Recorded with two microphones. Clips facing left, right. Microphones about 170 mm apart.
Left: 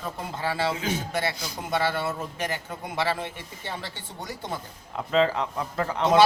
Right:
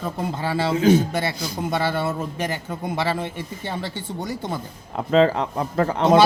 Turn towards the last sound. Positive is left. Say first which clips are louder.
# right 4 dB
turn(degrees=-40)  # may be behind; listen again after turning